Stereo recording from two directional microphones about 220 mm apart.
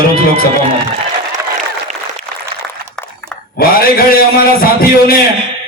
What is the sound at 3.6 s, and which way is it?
Speech, 40° left (ahead or behind).